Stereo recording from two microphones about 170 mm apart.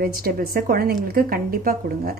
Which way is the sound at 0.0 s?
60° right (ahead or behind).